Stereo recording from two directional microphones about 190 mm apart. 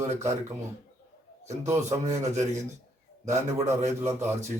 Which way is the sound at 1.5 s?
15° right (ahead or behind).